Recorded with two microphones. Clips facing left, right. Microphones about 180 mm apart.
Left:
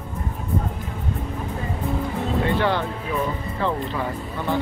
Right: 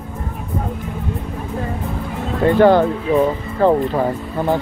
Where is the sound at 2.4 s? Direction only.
45° right (ahead or behind).